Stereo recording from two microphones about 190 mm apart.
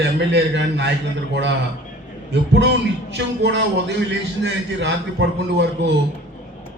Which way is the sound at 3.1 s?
65° right (ahead or behind).